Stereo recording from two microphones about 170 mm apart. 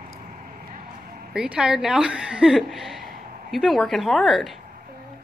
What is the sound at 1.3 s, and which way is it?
A woman's voice, 5° right (ahead or behind).